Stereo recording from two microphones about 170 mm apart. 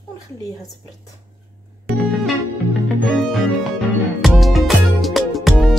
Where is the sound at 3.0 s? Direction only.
Centre (ahead or behind).